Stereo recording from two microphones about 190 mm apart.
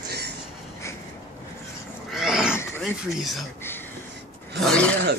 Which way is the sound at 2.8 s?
Centre (ahead or behind).